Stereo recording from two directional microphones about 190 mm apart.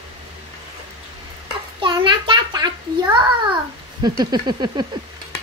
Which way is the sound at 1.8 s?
25° right (ahead or behind).